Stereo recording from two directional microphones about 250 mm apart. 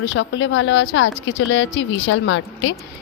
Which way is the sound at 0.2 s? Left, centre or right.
Left.